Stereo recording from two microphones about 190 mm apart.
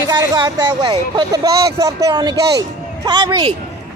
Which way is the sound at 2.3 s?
60° right (ahead or behind).